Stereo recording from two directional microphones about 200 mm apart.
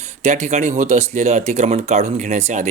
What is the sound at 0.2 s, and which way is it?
Speech, 35° right (ahead or behind).